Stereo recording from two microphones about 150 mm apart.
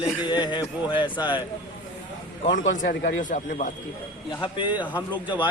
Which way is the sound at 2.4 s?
60° left (ahead or behind).